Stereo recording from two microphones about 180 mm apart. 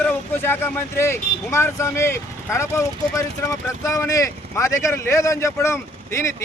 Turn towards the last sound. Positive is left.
turn(degrees=15)  # may be behind; listen again after turning